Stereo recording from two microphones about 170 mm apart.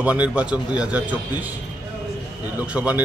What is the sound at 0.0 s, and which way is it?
A man's voice, 10° right (ahead or behind).